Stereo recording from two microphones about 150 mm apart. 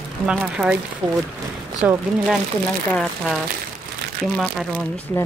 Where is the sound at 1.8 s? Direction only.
10° right (ahead or behind).